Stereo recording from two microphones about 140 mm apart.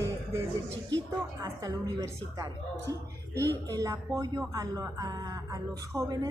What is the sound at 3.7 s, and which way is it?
Speech, 25° right (ahead or behind).